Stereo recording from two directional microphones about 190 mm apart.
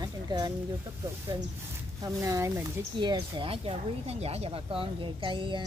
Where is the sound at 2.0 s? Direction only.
15° right (ahead or behind).